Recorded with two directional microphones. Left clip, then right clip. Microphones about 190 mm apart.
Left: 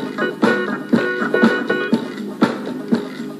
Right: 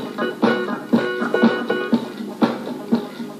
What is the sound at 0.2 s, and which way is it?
Music, 40° left (ahead or behind).